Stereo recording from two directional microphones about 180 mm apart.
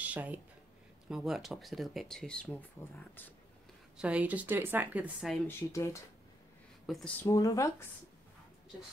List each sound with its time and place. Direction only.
0.0 s a sound: 10° right (ahead or behind)
1.0 s speech: centre (ahead or behind)
4.0 s a woman's voice: 5° right (ahead or behind)
5.6 s speech: 15° left (ahead or behind)
6.9 s speech: centre (ahead or behind)
7.2 s speech: 20° left (ahead or behind)